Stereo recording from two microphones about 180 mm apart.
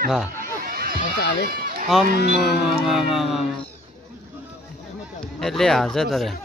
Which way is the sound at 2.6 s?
Centre (ahead or behind).